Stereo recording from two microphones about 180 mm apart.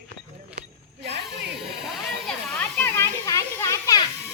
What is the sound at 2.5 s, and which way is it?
Children playing, 10° left (ahead or behind).